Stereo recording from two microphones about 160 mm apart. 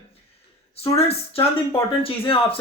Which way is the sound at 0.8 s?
40° left (ahead or behind).